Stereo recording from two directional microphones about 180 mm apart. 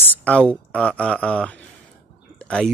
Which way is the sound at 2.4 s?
5° left (ahead or behind).